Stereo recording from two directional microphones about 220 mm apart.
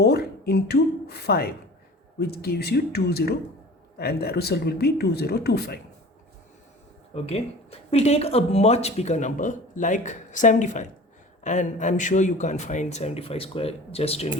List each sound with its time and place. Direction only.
0.0 s speech: 45° left (ahead or behind)
7.1 s speech: 25° left (ahead or behind)